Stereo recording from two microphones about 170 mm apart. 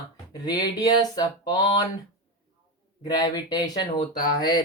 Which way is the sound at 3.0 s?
25° left (ahead or behind).